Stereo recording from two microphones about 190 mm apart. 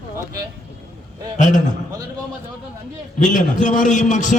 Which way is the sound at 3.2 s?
40° left (ahead or behind).